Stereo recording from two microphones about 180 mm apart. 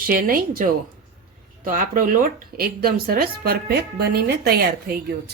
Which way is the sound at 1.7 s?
50° right (ahead or behind).